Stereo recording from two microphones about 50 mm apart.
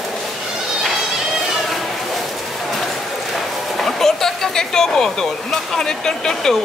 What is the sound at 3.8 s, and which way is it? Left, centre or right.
Speech, centre.